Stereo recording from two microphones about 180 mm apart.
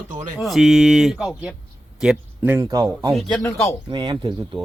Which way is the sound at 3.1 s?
5° left (ahead or behind).